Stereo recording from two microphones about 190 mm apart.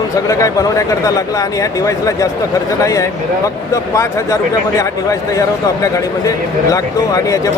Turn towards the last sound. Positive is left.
turn(degrees=15)  # may be behind; listen again after turning